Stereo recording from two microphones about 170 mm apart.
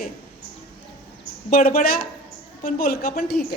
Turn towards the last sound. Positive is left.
turn(degrees=60)  # may be behind; listen again after turning